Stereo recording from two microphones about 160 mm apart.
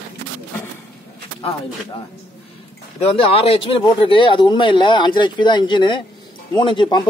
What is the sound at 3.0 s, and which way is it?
Speech, 35° left (ahead or behind).